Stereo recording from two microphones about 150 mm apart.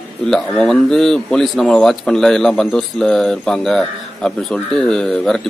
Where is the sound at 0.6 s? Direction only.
5° left (ahead or behind).